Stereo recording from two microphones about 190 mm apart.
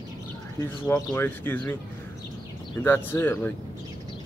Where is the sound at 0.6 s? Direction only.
10° left (ahead or behind).